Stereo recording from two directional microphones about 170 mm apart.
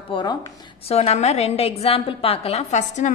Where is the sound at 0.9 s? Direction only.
40° left (ahead or behind).